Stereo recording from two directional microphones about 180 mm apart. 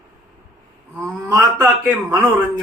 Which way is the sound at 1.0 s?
15° right (ahead or behind).